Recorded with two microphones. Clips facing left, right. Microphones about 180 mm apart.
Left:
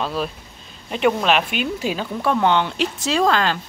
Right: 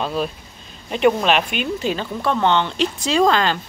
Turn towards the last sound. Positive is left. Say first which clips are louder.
# right 2 dB
turn(degrees=0)  # may be behind; listen again after turning